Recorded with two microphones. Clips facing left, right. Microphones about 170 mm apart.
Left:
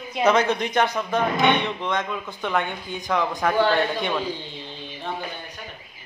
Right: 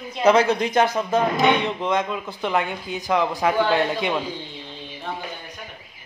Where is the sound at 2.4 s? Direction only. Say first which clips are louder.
Right 2 dB; 5° right (ahead or behind).